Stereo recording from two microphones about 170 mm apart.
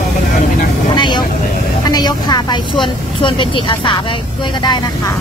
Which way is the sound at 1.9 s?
25° left (ahead or behind).